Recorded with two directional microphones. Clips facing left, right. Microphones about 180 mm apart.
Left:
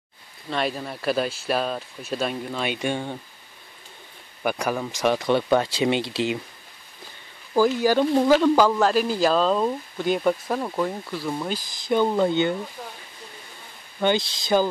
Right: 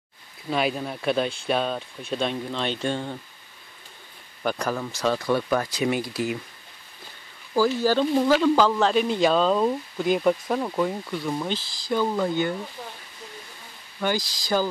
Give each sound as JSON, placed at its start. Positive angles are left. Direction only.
{"t": 0.5, "sound": "speech", "side_deg": 0}
{"t": 4.4, "sound": "speech", "side_deg": 10}
{"t": 7.5, "sound": "speech", "side_deg": 15}
{"t": 11.7, "sound": "speech", "side_deg": 20}
{"t": 14.0, "sound": "speech", "side_deg": 25}